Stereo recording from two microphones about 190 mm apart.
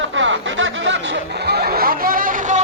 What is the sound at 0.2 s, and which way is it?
Snicker, 80° right.